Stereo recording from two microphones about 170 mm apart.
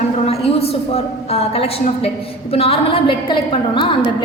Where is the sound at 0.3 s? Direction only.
35° left (ahead or behind).